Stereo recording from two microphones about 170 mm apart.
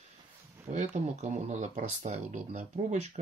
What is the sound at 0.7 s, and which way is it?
Speech, 45° right (ahead or behind).